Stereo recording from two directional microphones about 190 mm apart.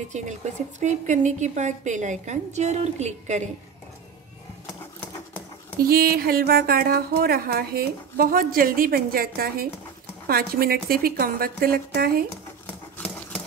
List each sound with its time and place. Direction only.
0.1 s a woman's voice: 40° right (ahead or behind)
5.8 s speech: 50° right (ahead or behind)